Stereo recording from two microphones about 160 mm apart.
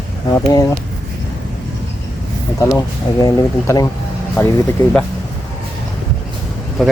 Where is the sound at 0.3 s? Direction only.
20° left (ahead or behind).